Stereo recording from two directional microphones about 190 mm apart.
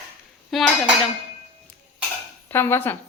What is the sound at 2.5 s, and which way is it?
Speech, 10° left (ahead or behind).